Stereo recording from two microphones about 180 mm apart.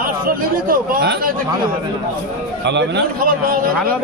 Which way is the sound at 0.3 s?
50° right (ahead or behind).